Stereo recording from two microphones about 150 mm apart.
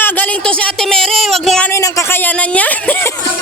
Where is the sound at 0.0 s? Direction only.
10° left (ahead or behind).